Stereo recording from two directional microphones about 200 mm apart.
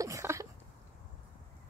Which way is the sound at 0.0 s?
15° right (ahead or behind).